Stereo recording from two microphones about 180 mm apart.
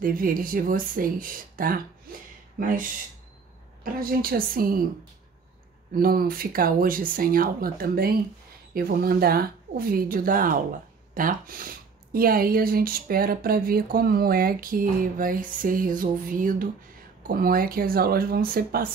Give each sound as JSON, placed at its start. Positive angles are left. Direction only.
{"t": 0.0, "sound": "speech", "side_deg": -50}
{"t": 5.9, "sound": "speech", "side_deg": -55}